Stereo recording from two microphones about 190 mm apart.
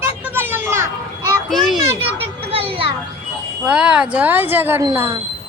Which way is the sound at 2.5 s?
30° right (ahead or behind).